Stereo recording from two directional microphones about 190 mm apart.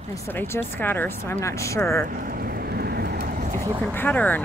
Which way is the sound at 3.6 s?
15° right (ahead or behind).